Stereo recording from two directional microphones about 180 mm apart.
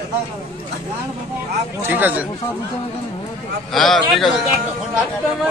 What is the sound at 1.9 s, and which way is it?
Speech, 10° right (ahead or behind).